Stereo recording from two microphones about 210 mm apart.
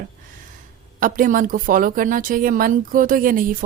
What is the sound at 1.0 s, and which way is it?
Speech, 40° right (ahead or behind).